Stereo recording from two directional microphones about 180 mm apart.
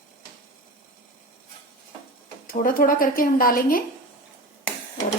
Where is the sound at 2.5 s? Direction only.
50° left (ahead or behind).